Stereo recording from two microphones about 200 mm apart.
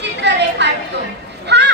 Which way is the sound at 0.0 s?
60° right (ahead or behind).